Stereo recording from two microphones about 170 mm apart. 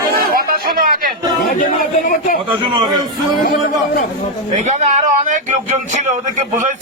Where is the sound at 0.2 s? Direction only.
60° right (ahead or behind).